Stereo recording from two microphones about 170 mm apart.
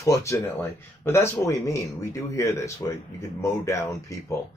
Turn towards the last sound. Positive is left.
turn(degrees=15)  # may be behind; listen again after turning